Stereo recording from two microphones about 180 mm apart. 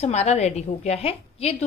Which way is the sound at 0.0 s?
35° left (ahead or behind).